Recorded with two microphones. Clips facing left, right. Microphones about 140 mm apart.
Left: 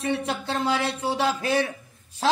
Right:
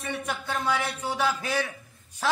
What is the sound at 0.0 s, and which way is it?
A man's voice, 25° left (ahead or behind).